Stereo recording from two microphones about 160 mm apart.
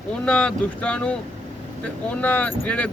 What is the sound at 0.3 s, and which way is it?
Speech, 5° left (ahead or behind).